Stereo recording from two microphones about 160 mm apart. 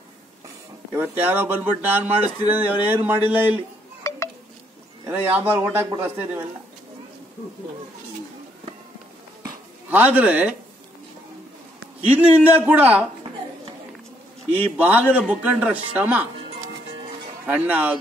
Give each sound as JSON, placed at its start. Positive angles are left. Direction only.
{"t": 0.9, "sound": "speech", "side_deg": -10}
{"t": 4.1, "sound": "a sound", "side_deg": 20}
{"t": 5.0, "sound": "speech", "side_deg": -10}
{"t": 9.8, "sound": "speech", "side_deg": -10}
{"t": 12.6, "sound": "speech", "side_deg": -10}
{"t": 14.5, "sound": "speech", "side_deg": -10}
{"t": 17.5, "sound": "speech", "side_deg": -10}